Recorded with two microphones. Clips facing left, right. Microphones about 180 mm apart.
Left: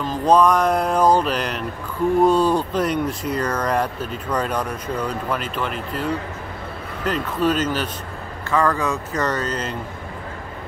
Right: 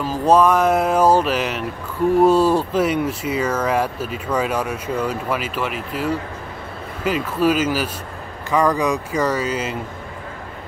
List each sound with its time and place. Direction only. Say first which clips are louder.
0.0 s speech: right 1 dB; 5° right (ahead or behind)